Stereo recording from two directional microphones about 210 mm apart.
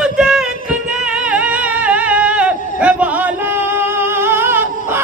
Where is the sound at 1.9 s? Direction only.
5° right (ahead or behind).